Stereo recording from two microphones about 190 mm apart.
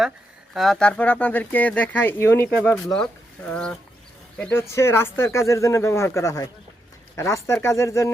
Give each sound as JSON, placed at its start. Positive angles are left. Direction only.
{"t": 0.5, "sound": "speech", "side_deg": 0}
{"t": 2.6, "sound": "speech", "side_deg": 0}